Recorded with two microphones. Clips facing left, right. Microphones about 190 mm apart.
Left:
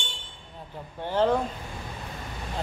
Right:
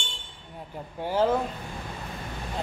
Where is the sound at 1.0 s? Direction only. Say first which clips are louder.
Even; 5° right (ahead or behind).